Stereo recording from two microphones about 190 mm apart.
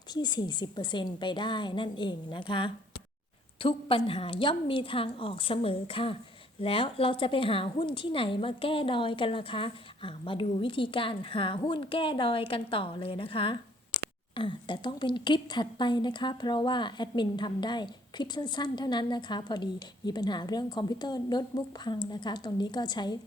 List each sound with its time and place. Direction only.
0.1 s a woman's voice: 20° left (ahead or behind)